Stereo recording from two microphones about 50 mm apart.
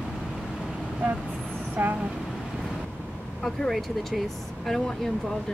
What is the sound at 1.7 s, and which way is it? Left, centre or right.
Speech, right.